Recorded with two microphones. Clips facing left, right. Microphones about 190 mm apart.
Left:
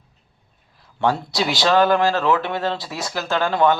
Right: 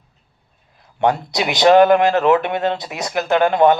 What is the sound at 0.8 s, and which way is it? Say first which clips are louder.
Speech: right 3 dB; 20° right (ahead or behind).